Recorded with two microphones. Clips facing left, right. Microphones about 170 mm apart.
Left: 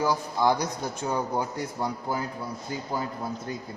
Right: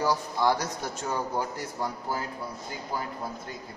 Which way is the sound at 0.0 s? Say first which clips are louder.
Left 1 dB; 15° left (ahead or behind).